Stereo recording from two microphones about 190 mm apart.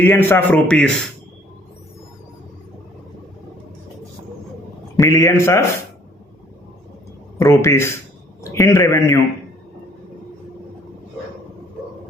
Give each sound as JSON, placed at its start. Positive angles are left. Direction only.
{"t": 0.0, "sound": "a man's voice", "side_deg": 10}
{"t": 4.9, "sound": "a man's voice", "side_deg": 15}
{"t": 7.3, "sound": "a man's voice", "side_deg": 15}